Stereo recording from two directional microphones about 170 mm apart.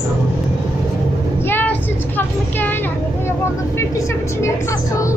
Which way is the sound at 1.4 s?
10° left (ahead or behind).